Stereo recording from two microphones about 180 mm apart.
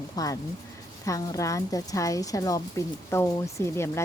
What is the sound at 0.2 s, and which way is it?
A woman's voice, 20° left (ahead or behind).